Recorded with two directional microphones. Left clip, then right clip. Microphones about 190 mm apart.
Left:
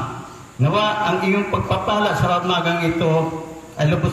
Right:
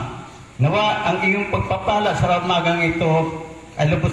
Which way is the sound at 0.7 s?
65° left (ahead or behind).